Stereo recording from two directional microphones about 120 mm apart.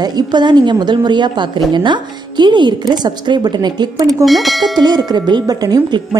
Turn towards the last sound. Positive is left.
turn(degrees=-30)  # may be behind; listen again after turning